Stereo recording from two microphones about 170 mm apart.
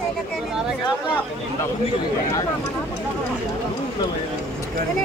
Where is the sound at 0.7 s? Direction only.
5° right (ahead or behind).